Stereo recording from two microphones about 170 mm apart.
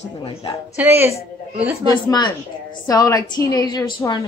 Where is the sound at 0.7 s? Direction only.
15° right (ahead or behind).